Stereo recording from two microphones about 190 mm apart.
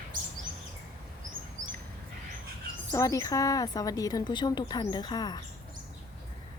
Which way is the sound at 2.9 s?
15° left (ahead or behind).